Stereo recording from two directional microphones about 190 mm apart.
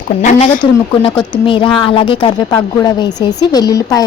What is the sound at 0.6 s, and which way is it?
A woman's voice, 25° left (ahead or behind).